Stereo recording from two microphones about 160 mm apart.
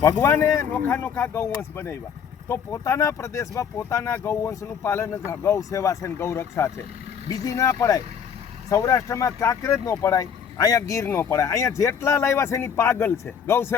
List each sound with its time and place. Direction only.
0.0 s speech: 15° left (ahead or behind)